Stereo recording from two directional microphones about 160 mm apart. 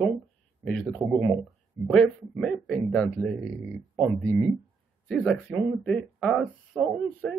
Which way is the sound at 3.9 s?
15° right (ahead or behind).